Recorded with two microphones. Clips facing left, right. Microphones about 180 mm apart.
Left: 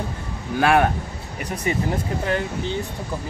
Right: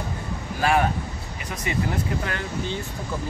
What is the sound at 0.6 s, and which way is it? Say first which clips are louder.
Speech: left 4 dB; 65° left (ahead or behind).